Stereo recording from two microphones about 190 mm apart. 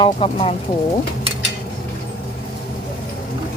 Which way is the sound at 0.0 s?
30° left (ahead or behind).